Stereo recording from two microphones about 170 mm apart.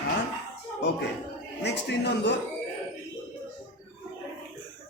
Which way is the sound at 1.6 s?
90° left.